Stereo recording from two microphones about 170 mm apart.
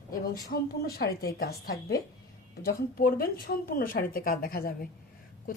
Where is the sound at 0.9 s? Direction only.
65° left (ahead or behind).